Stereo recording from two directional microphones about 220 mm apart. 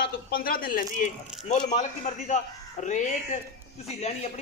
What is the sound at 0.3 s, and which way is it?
A man's voice, 40° left (ahead or behind).